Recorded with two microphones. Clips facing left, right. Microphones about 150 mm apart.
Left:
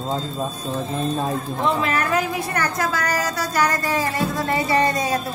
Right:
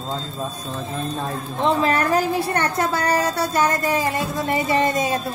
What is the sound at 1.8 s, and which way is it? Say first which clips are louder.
A woman's voice: right 3 dB; 35° right (ahead or behind).